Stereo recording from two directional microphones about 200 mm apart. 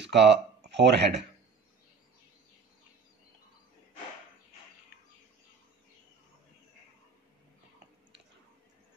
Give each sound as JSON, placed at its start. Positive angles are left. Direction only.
{"t": 0.0, "sound": "speech", "side_deg": -60}